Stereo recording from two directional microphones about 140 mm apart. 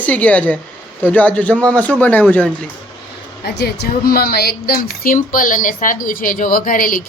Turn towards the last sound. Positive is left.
turn(degrees=80)